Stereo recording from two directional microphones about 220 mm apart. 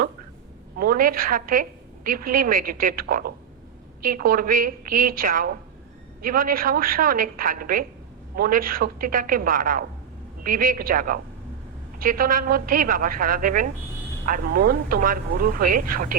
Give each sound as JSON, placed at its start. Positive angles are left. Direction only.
{"t": 0.8, "sound": "speech", "side_deg": -40}